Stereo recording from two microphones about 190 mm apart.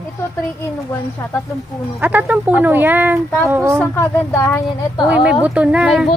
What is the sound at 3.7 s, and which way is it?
A woman's voice, 15° left (ahead or behind).